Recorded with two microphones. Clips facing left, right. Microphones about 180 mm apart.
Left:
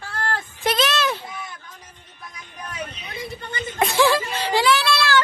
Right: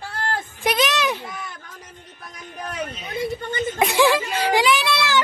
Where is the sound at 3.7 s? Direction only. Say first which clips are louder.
Even; 15° right (ahead or behind).